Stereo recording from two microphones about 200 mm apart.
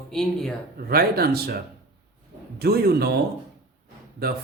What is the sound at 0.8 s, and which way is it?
Speech, 50° right (ahead or behind).